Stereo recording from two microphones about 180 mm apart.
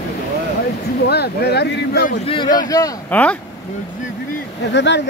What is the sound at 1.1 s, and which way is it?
Speech, 65° left (ahead or behind).